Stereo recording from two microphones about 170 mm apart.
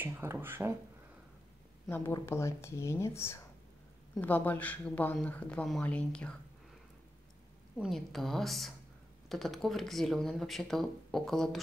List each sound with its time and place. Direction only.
0.0 s speech: 15° right (ahead or behind)
1.9 s speech: 15° left (ahead or behind)
7.8 s speech: centre (ahead or behind)